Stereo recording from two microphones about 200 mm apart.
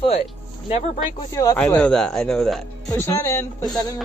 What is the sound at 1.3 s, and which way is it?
Speech, 15° left (ahead or behind).